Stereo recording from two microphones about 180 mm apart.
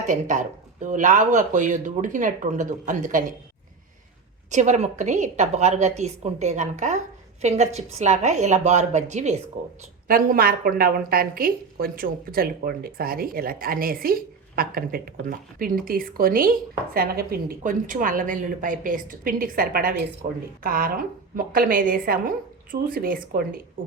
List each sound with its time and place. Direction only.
0.1 s a woman's voice: 45° right (ahead or behind)
4.5 s a woman's voice: 40° right (ahead or behind)
10.1 s a woman's voice: 50° right (ahead or behind)